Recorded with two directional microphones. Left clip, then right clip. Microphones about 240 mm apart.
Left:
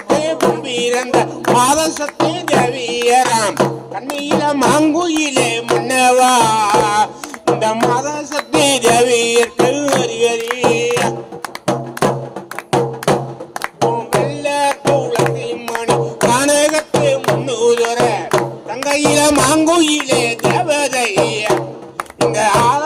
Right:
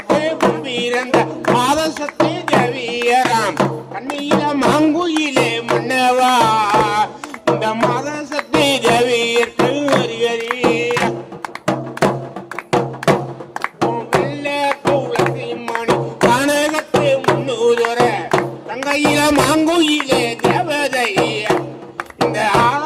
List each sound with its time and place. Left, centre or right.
0.1 s music: left
13.8 s music: left
22.2 s a sound: left